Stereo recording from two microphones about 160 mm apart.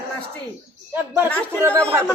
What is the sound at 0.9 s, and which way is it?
Speech, 10° right (ahead or behind).